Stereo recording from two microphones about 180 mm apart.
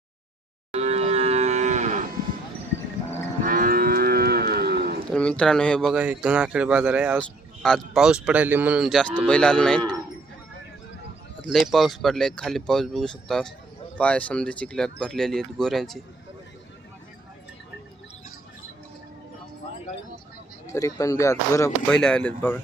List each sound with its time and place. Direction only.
0.7 s livestock: 35° right (ahead or behind)
3.4 s livestock: 50° right (ahead or behind)
5.0 s speech: 5° left (ahead or behind)
5.9 s speech: 5° right (ahead or behind)
7.2 s speech: 5° left (ahead or behind)
11.5 s speech: centre (ahead or behind)
20.7 s speech: 15° left (ahead or behind)
21.8 s speech: 5° left (ahead or behind)